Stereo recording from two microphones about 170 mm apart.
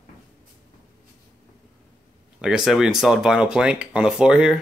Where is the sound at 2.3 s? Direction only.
5° right (ahead or behind).